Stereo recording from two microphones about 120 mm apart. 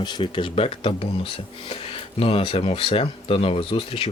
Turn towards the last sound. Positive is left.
turn(degrees=50)  # may be behind; listen again after turning